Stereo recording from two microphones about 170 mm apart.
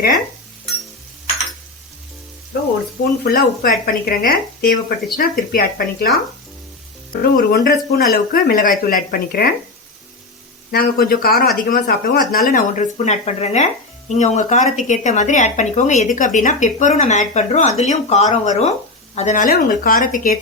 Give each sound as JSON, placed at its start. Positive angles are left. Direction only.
{"t": 3.2, "sound": "speech", "side_deg": 55}
{"t": 7.1, "sound": "speech", "side_deg": 60}
{"t": 10.7, "sound": "speech", "side_deg": 60}